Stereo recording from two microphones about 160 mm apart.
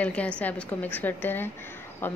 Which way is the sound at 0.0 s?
10° left (ahead or behind).